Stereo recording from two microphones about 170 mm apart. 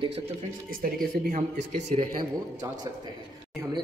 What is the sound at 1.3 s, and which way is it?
Speech, 45° right (ahead or behind).